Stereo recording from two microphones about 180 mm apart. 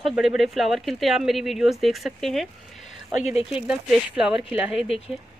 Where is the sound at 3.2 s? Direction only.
40° left (ahead or behind).